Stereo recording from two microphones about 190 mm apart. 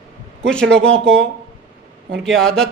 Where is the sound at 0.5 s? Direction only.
5° left (ahead or behind).